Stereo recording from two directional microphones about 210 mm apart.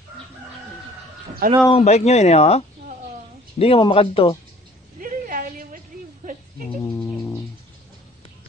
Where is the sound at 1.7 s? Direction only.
30° left (ahead or behind).